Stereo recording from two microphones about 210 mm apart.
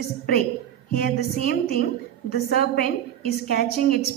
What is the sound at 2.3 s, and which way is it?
A woman's voice, 45° left (ahead or behind).